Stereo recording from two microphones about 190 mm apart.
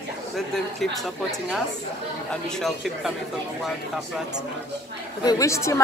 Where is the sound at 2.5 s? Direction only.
Centre (ahead or behind).